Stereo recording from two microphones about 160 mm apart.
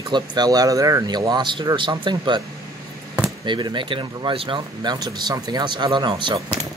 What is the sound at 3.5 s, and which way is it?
Speech, 30° right (ahead or behind).